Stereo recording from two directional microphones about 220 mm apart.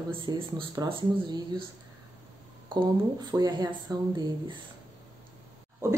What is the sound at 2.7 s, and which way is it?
Speech, 20° right (ahead or behind).